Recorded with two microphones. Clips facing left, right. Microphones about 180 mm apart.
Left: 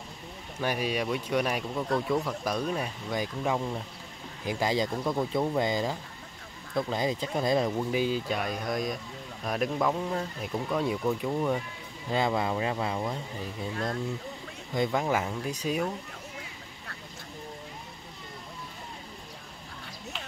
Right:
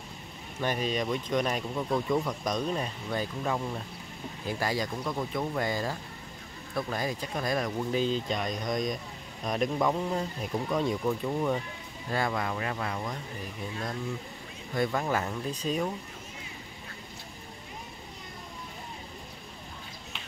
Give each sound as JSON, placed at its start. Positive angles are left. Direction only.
{"t": 0.6, "sound": "speech", "side_deg": 10}
{"t": 7.9, "sound": "speech", "side_deg": 10}
{"t": 12.1, "sound": "speech", "side_deg": 20}
{"t": 14.7, "sound": "speech", "side_deg": 15}